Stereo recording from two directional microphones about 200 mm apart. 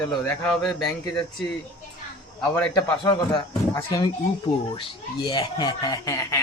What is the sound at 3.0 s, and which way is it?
Speech, 20° left (ahead or behind).